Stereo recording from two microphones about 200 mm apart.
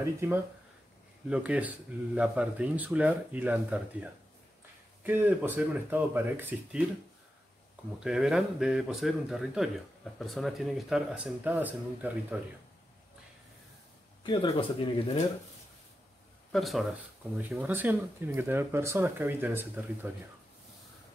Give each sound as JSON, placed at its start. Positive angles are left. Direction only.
{"t": 0.0, "sound": "speech", "side_deg": -10}
{"t": 8.0, "sound": "speech", "side_deg": -5}
{"t": 14.2, "sound": "speech", "side_deg": 25}
{"t": 16.5, "sound": "speech", "side_deg": 0}